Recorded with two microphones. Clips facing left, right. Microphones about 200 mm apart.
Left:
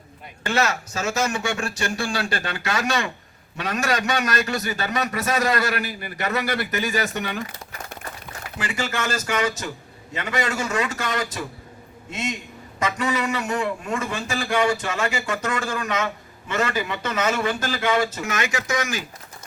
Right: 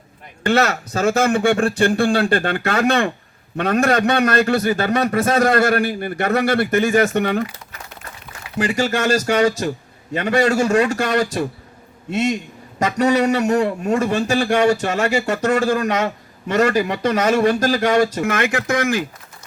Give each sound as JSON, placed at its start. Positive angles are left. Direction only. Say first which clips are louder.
{"t": 0.4, "sound": "speech", "louder": "right 6 dB", "side_deg": -60}
{"t": 8.5, "sound": "speech", "louder": "right 8 dB", "side_deg": -45}